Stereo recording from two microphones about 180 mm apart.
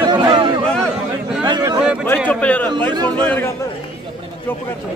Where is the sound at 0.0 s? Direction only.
25° right (ahead or behind).